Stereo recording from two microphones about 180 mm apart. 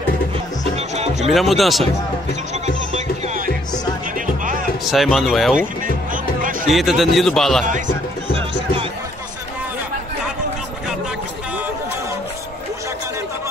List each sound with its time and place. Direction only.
0.7 s music: 35° right (ahead or behind)
1.3 s speech: centre (ahead or behind)
4.8 s speech: centre (ahead or behind)
6.7 s speech: centre (ahead or behind)